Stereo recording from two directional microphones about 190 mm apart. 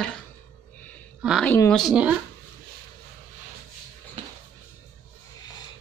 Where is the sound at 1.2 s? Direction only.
5° right (ahead or behind).